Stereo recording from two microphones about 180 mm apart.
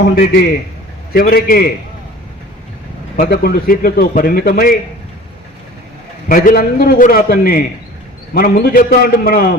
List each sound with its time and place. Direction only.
0.0 s a man's voice: 60° left (ahead or behind)
3.2 s a man's voice: 60° left (ahead or behind)
6.2 s a man's voice: 50° left (ahead or behind)